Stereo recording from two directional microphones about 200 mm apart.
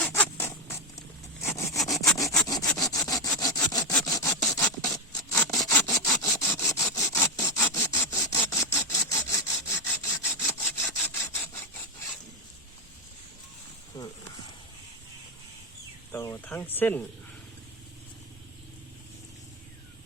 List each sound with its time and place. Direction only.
0.0 s zipper: 10° left (ahead or behind)
2.1 s sawing: 15° left (ahead or behind)
4.4 s scratch: 15° left (ahead or behind)
5.6 s sawing: 15° left (ahead or behind)
14.0 s a sound: 20° left (ahead or behind)
16.1 s a sound: 15° left (ahead or behind)